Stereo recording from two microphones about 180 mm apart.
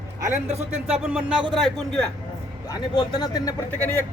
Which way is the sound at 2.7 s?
20° left (ahead or behind).